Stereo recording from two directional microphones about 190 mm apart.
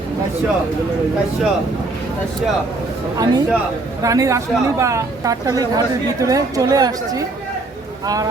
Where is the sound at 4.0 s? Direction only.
20° right (ahead or behind).